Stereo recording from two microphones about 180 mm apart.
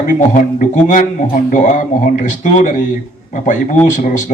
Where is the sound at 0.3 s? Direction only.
45° left (ahead or behind).